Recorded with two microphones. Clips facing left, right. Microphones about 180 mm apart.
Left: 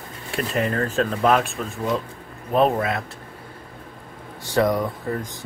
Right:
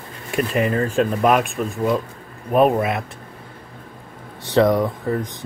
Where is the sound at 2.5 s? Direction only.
15° right (ahead or behind).